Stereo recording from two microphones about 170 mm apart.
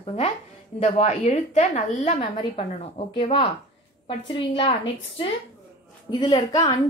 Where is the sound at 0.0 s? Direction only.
35° left (ahead or behind).